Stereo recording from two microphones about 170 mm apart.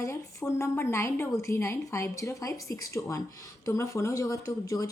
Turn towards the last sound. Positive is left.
turn(degrees=20)  # may be behind; listen again after turning